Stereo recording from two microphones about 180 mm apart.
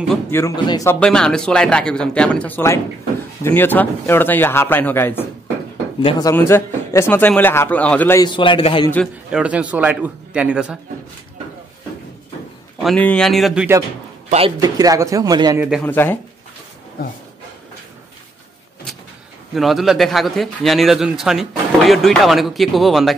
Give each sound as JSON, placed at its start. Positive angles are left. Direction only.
{"t": 0.3, "sound": "a man's voice", "side_deg": 10}
{"t": 0.9, "sound": "a man's voice", "side_deg": 5}
{"t": 6.0, "sound": "a man's voice", "side_deg": 20}
{"t": 8.2, "sound": "a man's voice", "side_deg": 30}
{"t": 8.9, "sound": "a man's voice", "side_deg": 0}
{"t": 12.8, "sound": "a man's voice", "side_deg": 5}
{"t": 14.6, "sound": "speech", "side_deg": -20}
{"t": 15.8, "sound": "a man's voice", "side_deg": 10}
{"t": 17.0, "sound": "speech", "side_deg": 55}
{"t": 19.5, "sound": "a man's voice", "side_deg": 0}